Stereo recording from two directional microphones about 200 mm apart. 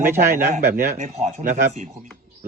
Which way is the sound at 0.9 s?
35° right (ahead or behind).